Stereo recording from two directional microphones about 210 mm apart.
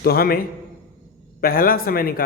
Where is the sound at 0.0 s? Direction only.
45° left (ahead or behind).